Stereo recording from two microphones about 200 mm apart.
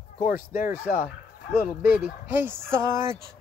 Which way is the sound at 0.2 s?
45° left (ahead or behind).